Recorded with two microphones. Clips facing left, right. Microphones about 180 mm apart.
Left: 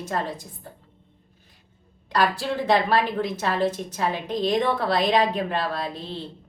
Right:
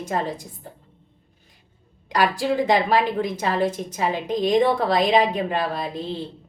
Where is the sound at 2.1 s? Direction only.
10° right (ahead or behind).